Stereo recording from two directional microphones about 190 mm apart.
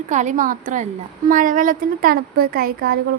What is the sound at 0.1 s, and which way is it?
A woman's voice, 40° right (ahead or behind).